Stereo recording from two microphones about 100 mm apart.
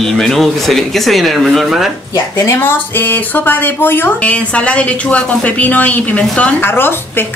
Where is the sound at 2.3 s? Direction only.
30° left (ahead or behind).